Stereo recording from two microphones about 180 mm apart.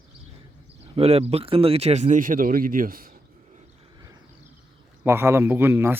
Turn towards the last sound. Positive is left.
turn(degrees=-10)  # may be behind; listen again after turning